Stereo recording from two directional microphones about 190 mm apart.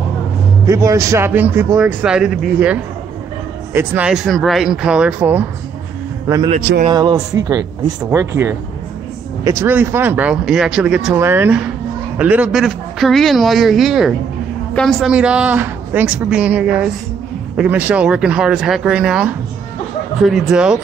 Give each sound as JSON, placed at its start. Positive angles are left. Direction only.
{"t": 0.7, "sound": "a man's voice", "side_deg": -15}